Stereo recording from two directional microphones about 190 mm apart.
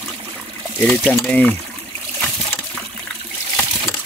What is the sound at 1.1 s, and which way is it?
Speech, 5° left (ahead or behind).